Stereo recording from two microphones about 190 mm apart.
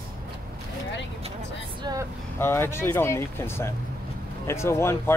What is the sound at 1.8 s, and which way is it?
Speech, 20° right (ahead or behind).